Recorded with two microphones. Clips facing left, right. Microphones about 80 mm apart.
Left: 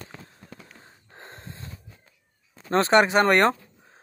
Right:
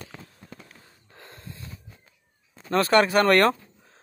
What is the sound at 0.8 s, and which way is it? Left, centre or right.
Snort, left.